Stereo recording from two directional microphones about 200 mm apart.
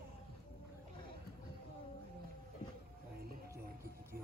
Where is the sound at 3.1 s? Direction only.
50° right (ahead or behind).